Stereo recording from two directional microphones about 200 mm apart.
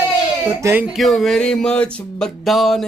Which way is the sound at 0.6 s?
10° right (ahead or behind).